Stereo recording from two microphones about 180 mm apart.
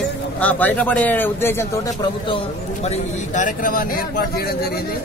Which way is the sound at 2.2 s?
30° left (ahead or behind).